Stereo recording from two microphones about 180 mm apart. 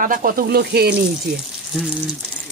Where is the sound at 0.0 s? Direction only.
50° right (ahead or behind).